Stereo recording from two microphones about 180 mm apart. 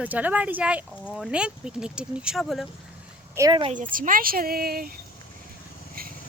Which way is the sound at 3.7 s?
50° right (ahead or behind).